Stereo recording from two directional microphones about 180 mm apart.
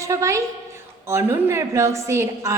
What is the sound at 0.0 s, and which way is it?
A woman's voice, 15° right (ahead or behind).